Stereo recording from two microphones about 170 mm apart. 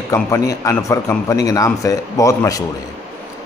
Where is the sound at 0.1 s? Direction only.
15° left (ahead or behind).